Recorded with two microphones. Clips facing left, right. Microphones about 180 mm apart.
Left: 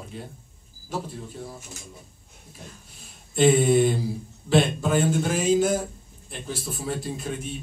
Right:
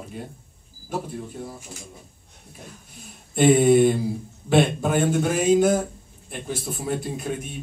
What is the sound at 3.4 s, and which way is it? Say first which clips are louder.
Music: right 3 dB; 55° right (ahead or behind).